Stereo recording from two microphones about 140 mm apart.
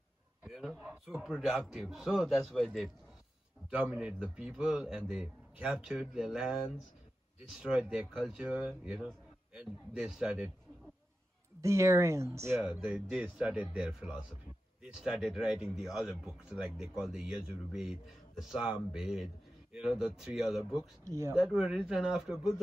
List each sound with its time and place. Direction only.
0.4 s speech: centre (ahead or behind)
7.6 s speech: 5° right (ahead or behind)
11.6 s speech: 20° right (ahead or behind)
12.6 s speech: 5° right (ahead or behind)
21.1 s speech: 20° right (ahead or behind)
21.4 s speech: 5° right (ahead or behind)